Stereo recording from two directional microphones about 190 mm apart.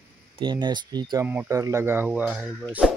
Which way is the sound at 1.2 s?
10° right (ahead or behind).